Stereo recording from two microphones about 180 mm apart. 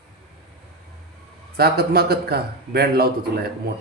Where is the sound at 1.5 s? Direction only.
60° right (ahead or behind).